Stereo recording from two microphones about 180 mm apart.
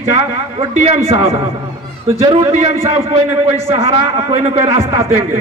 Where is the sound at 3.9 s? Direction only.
35° right (ahead or behind).